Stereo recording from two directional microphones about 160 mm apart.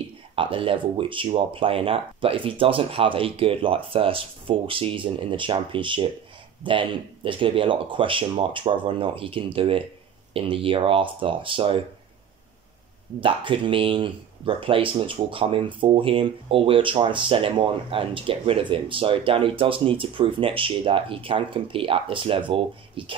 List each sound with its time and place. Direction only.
0.4 s speech: 35° right (ahead or behind)
13.2 s speech: 30° right (ahead or behind)